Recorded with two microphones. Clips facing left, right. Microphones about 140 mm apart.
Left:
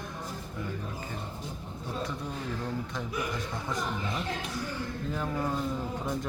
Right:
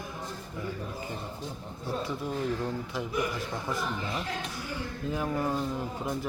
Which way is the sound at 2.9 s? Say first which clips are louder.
Right 3 dB; 5° right (ahead or behind).